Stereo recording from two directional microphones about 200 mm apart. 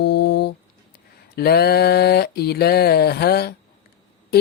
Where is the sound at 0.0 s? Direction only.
55° left (ahead or behind).